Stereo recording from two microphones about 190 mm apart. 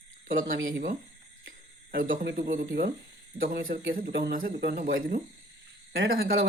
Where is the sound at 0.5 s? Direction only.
80° right.